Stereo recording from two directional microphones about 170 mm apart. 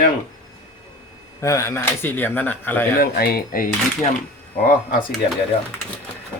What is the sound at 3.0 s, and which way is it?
Speech, 65° left (ahead or behind).